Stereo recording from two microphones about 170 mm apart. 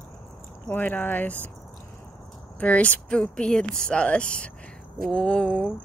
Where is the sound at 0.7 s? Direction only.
10° left (ahead or behind).